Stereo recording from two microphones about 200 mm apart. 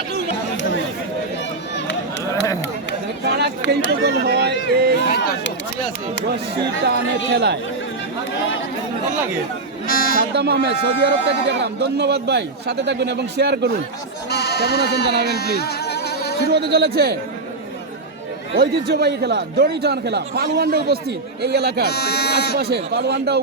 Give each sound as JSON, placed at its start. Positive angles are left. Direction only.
{"t": 3.2, "sound": "chatter", "side_deg": -55}
{"t": 4.0, "sound": "a sound", "side_deg": -55}
{"t": 5.0, "sound": "a sound", "side_deg": 50}
{"t": 6.8, "sound": "speech", "side_deg": -55}
{"t": 9.8, "sound": "a sound", "side_deg": 45}
{"t": 10.3, "sound": "speech", "side_deg": -55}
{"t": 14.3, "sound": "speech", "side_deg": 55}
{"t": 15.3, "sound": "music", "side_deg": 50}
{"t": 16.5, "sound": "a man's voice", "side_deg": -55}
{"t": 18.5, "sound": "a man's voice", "side_deg": -50}
{"t": 21.8, "sound": "speech", "side_deg": 55}
{"t": 22.5, "sound": "speech", "side_deg": -55}